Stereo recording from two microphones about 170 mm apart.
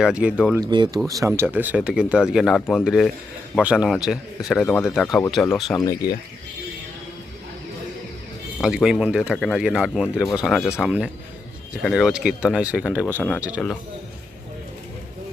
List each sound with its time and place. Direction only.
0.0 s speech: 5° right (ahead or behind)
0.6 s speech: 25° right (ahead or behind); by 4.9 s 10° left (ahead or behind)
4.9 s speech: centre (ahead or behind)
5.7 s speech: 15° left (ahead or behind)
8.6 s speech: 5° right (ahead or behind)